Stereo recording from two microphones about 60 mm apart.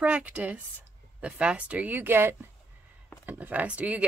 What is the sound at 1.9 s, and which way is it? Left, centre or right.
Speech, right.